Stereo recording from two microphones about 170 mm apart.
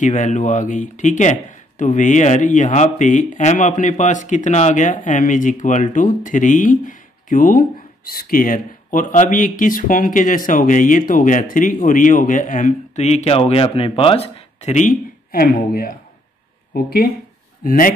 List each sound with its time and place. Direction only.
0.0 s speech: 45° left (ahead or behind)
17.6 s speech: 55° left (ahead or behind)